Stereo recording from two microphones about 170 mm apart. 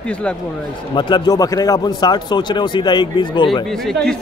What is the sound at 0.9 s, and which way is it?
A man's voice, 25° left (ahead or behind).